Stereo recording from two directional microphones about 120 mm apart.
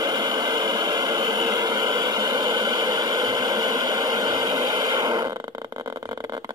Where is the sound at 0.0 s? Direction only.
35° right (ahead or behind).